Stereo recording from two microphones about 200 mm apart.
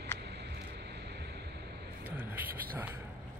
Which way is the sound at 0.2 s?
55° right (ahead or behind).